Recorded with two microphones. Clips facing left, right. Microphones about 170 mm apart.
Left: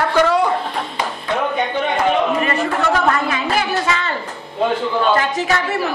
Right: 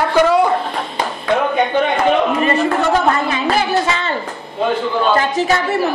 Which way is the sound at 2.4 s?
25° right (ahead or behind).